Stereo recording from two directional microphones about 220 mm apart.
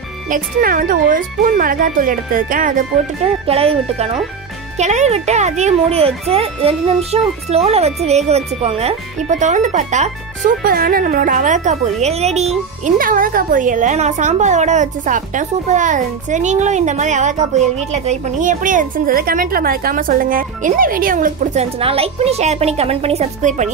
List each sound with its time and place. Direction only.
0.3 s a woman's voice: 40° right (ahead or behind)
3.4 s a woman's voice: 25° right (ahead or behind)
21.7 s speech: 25° right (ahead or behind)